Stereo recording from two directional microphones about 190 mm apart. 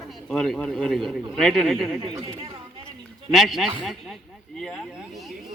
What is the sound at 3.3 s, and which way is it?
Speech, centre (ahead or behind).